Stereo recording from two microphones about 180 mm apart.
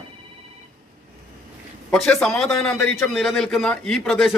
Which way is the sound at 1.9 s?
5° left (ahead or behind).